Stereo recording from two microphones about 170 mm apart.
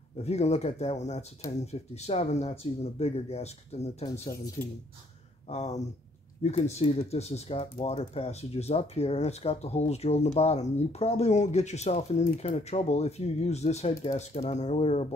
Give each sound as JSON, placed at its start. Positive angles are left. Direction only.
{"t": 0.2, "sound": "speech", "side_deg": 40}
{"t": 5.5, "sound": "speech", "side_deg": 40}